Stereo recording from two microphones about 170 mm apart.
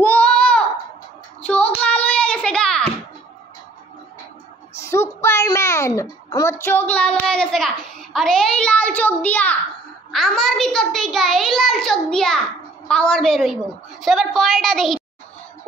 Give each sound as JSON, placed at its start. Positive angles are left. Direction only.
{"t": 0.0, "sound": "a sound", "side_deg": 10}
{"t": 1.4, "sound": "child singing", "side_deg": 5}
{"t": 1.8, "sound": "hands", "side_deg": 5}
{"t": 4.7, "sound": "child singing", "side_deg": 15}
{"t": 5.2, "sound": "a child's voice", "side_deg": 15}